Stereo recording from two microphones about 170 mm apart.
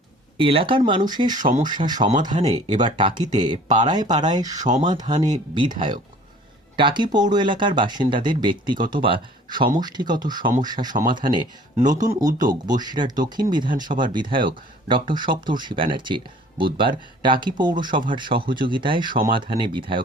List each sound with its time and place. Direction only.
0.3 s speech: 30° right (ahead or behind)
4.5 s speech: 45° right (ahead or behind)
4.9 s speech: 25° right (ahead or behind)
12.0 s speech: 25° right (ahead or behind)